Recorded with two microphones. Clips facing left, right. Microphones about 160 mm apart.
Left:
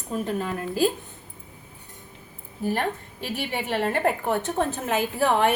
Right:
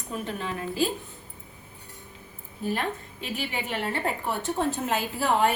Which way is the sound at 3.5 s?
45° left (ahead or behind).